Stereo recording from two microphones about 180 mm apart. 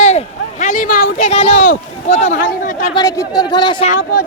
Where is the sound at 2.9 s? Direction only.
20° left (ahead or behind).